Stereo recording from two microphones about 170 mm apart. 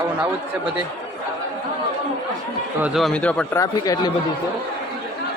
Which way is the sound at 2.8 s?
Centre (ahead or behind).